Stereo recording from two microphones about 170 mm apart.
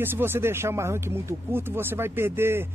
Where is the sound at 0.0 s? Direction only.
15° right (ahead or behind).